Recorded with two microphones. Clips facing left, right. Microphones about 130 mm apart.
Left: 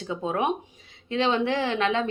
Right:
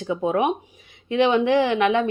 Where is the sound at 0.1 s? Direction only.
15° right (ahead or behind).